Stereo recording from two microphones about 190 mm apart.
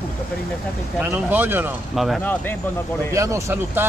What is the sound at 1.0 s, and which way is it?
Speech, 10° right (ahead or behind).